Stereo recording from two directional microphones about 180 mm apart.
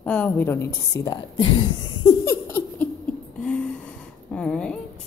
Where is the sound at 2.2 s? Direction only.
10° left (ahead or behind).